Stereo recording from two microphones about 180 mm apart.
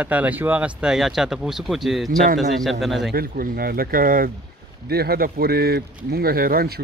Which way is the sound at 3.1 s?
55° right (ahead or behind).